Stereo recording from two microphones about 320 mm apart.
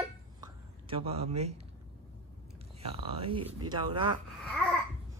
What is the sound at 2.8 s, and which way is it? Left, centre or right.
Speech, centre.